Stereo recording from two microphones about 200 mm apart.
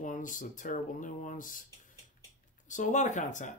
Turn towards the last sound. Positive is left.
turn(degrees=40)  # may be behind; listen again after turning